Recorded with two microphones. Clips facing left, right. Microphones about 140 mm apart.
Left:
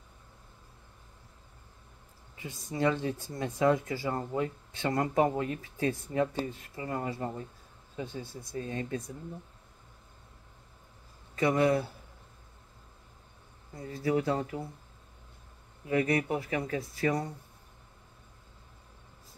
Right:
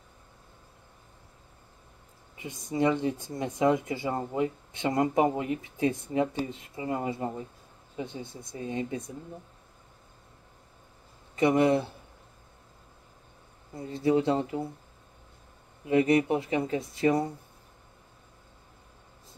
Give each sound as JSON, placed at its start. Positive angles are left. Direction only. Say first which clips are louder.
{"t": 2.3, "sound": "speech", "louder": "right 5 dB", "side_deg": -20}
{"t": 11.3, "sound": "speech", "louder": "right 3 dB", "side_deg": -20}
{"t": 13.7, "sound": "speech", "louder": "right 4 dB", "side_deg": -25}
{"t": 15.9, "sound": "speech", "louder": "right 5 dB", "side_deg": -20}